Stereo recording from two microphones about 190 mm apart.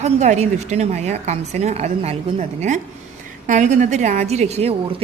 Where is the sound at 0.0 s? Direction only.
35° right (ahead or behind).